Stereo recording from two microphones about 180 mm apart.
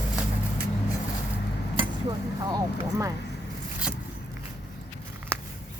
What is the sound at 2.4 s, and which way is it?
Speech, 20° right (ahead or behind).